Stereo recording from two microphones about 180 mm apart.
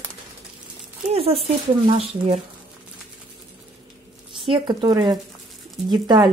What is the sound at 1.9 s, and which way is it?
Speech, 30° right (ahead or behind).